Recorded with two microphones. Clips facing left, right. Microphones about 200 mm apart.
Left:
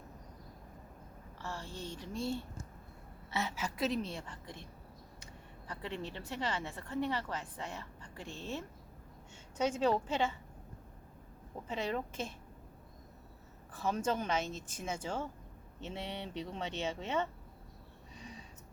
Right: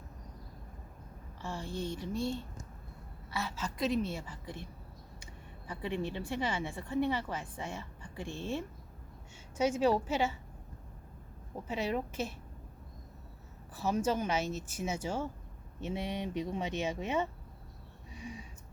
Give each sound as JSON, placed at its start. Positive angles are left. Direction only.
{"t": 1.4, "sound": "a woman's voice", "side_deg": -10}
{"t": 3.2, "sound": "a woman's voice", "side_deg": 20}
{"t": 3.8, "sound": "a woman's voice", "side_deg": 0}
{"t": 5.6, "sound": "a woman's voice", "side_deg": -15}
{"t": 11.7, "sound": "a woman's voice", "side_deg": -10}
{"t": 13.7, "sound": "a woman's voice", "side_deg": -5}
{"t": 18.1, "sound": "a sound", "side_deg": -10}